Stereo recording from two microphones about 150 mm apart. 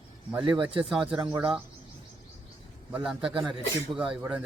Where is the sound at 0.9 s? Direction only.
5° right (ahead or behind).